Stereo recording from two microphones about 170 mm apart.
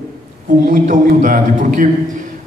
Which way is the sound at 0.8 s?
50° right (ahead or behind).